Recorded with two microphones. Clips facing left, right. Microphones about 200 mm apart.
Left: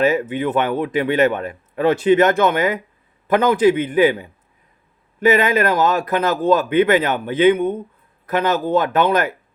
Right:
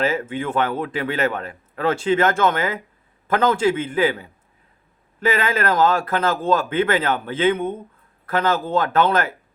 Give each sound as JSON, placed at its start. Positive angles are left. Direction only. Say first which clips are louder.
{"t": 0.0, "sound": "a man's voice", "louder": "left 5 dB", "side_deg": 20}
{"t": 5.4, "sound": "speech", "louder": "left 2 dB", "side_deg": 15}